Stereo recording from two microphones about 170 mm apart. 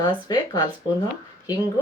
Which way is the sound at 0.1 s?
25° left (ahead or behind).